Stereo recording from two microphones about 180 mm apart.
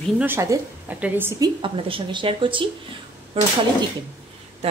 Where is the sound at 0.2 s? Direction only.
15° right (ahead or behind).